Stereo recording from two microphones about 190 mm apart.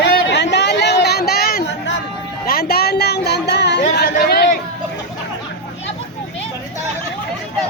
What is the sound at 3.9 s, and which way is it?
Chatter, 55° left (ahead or behind).